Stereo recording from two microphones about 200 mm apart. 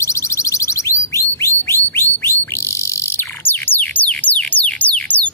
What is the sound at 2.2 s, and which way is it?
Bird, 15° left (ahead or behind).